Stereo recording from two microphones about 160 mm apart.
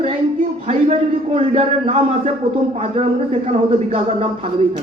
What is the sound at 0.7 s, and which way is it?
A man's voice, 45° right (ahead or behind).